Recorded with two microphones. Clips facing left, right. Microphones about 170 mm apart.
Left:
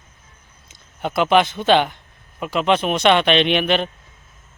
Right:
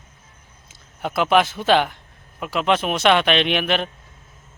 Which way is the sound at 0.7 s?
Centre (ahead or behind).